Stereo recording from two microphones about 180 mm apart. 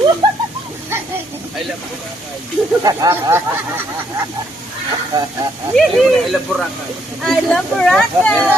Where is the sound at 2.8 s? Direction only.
20° right (ahead or behind).